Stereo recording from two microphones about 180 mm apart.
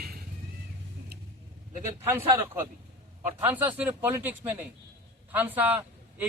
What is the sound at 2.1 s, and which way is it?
Speech, 15° right (ahead or behind).